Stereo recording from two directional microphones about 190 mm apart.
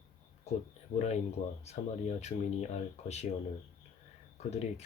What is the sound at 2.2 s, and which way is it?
Speech, 35° left (ahead or behind).